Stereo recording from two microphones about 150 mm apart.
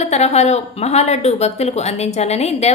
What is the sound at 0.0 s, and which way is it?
Speech, 45° left (ahead or behind).